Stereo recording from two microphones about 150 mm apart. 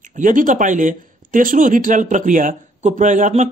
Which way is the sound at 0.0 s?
60° right (ahead or behind).